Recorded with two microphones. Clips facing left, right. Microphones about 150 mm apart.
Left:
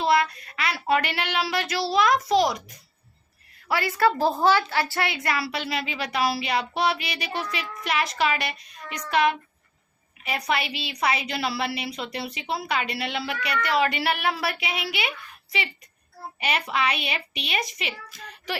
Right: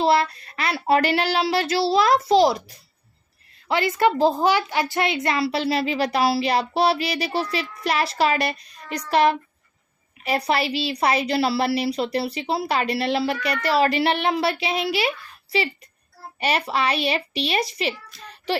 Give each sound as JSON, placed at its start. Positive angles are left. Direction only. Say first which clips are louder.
{"t": 0.0, "sound": "a child's voice", "louder": "right 3 dB", "side_deg": -30}
{"t": 16.4, "sound": "a child's voice", "louder": "right 3 dB", "side_deg": -35}
{"t": 18.5, "sound": "child singing", "louder": "right 7 dB", "side_deg": -30}